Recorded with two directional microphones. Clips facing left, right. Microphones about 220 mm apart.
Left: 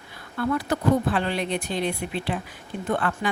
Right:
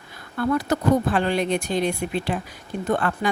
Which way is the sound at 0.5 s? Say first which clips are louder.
Right 2 dB; 45° right (ahead or behind).